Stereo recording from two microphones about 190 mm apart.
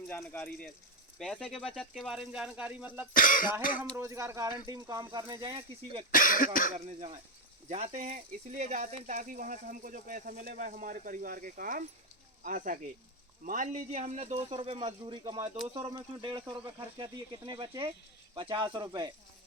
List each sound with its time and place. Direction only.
0.1 s speech: 5° left (ahead or behind); by 3.1 s 10° right (ahead or behind)
3.1 s speech: 45° left (ahead or behind)
3.9 s speech: 15° right (ahead or behind)
6.1 s speech: 45° left (ahead or behind)
6.7 s speech: 35° right (ahead or behind)